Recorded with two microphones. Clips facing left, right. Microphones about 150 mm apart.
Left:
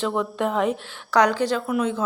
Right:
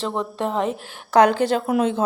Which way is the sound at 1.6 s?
25° right (ahead or behind).